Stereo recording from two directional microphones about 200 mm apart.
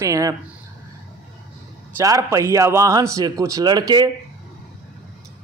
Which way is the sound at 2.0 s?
15° right (ahead or behind).